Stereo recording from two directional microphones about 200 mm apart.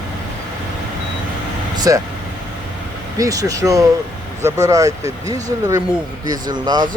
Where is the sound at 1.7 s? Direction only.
20° right (ahead or behind).